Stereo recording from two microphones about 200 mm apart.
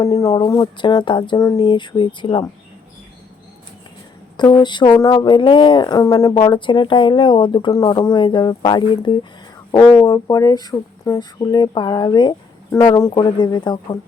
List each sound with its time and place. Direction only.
0.0 s speech: 15° left (ahead or behind)
4.4 s speech: 20° left (ahead or behind)